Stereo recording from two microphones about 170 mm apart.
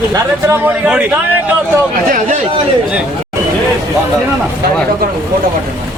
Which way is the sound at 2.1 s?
45° right (ahead or behind).